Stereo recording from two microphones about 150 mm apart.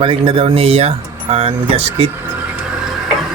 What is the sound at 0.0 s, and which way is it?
Speech, 35° right (ahead or behind).